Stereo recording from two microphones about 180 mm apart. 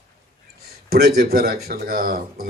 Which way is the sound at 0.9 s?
55° right (ahead or behind).